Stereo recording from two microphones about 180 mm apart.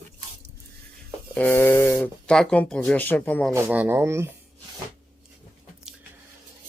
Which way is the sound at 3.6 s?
10° right (ahead or behind).